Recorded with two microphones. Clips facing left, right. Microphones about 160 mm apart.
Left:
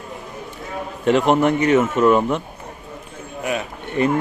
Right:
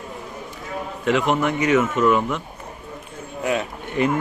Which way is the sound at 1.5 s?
30° left (ahead or behind).